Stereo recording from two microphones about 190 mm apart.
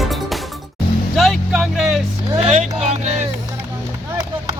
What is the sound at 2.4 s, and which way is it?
Vehicle, 35° right (ahead or behind).